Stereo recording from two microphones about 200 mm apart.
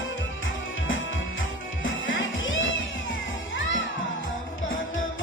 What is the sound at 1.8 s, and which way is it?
Music, 75° left (ahead or behind).